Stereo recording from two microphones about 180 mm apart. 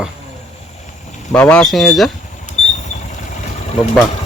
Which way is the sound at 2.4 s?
40° left (ahead or behind).